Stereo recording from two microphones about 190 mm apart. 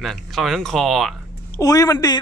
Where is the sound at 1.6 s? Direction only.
20° left (ahead or behind).